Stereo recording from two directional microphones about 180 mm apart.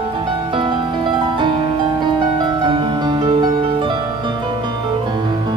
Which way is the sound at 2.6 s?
25° right (ahead or behind).